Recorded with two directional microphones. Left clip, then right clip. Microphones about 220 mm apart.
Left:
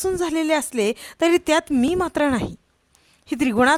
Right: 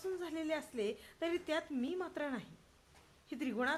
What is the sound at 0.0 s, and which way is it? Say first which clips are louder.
Speech: left 19 dB; 50° left (ahead or behind).